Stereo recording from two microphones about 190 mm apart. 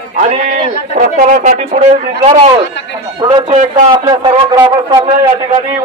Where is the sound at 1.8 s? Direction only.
30° right (ahead or behind).